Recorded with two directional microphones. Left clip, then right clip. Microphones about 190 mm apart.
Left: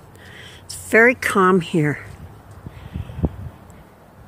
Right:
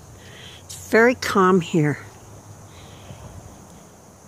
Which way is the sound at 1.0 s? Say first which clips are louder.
Left 2 dB; centre (ahead or behind).